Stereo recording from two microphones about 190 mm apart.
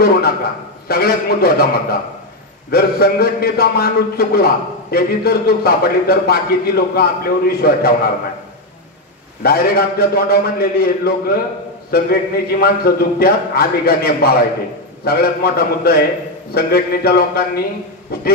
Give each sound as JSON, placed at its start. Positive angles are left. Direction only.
{"t": 0.8, "sound": "a man's voice", "side_deg": 55}
{"t": 9.4, "sound": "a man's voice", "side_deg": 55}